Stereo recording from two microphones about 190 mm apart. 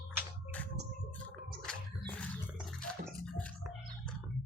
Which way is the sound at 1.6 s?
5° left (ahead or behind).